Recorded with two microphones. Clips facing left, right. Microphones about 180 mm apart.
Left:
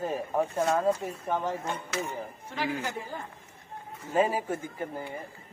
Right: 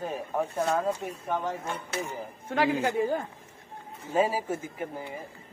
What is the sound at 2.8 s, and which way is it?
Speech, 60° right (ahead or behind).